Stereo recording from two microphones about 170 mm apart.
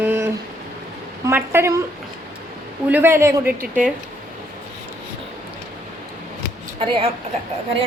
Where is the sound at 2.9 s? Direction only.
15° right (ahead or behind).